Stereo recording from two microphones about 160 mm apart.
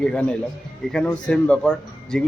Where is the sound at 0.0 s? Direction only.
5° left (ahead or behind).